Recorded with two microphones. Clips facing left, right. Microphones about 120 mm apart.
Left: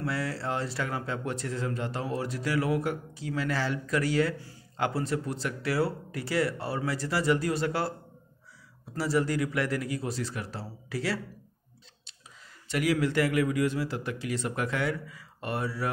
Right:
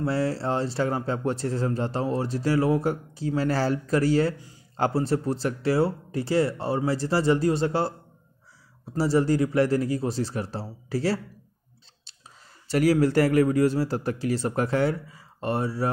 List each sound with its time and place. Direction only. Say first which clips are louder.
0.0 s speech: right 6 dB; 30° right (ahead or behind)
8.9 s speech: right 5 dB; 30° right (ahead or behind)
12.6 s speech: right 6 dB; 35° right (ahead or behind)